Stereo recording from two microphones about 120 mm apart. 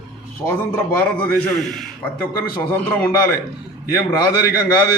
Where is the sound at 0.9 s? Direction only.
15° left (ahead or behind).